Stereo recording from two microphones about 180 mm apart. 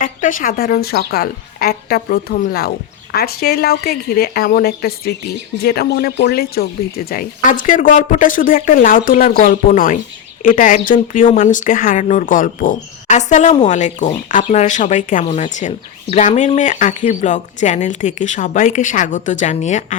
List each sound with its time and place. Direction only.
0.0 s speech: 50° left (ahead or behind)